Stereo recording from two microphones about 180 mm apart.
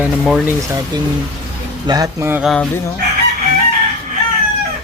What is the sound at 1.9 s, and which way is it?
Speech, 20° right (ahead or behind).